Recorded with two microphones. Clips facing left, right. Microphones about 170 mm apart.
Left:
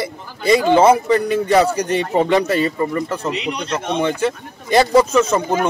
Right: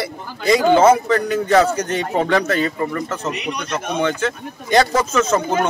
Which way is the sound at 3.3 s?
25° left (ahead or behind).